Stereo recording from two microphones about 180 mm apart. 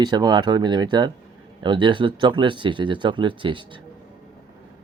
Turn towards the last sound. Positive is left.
turn(degrees=-25)  # may be behind; listen again after turning